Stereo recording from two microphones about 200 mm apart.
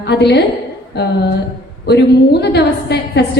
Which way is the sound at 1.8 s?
55° left (ahead or behind).